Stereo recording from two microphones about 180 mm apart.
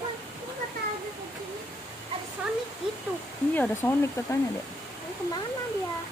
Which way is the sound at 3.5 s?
10° left (ahead or behind).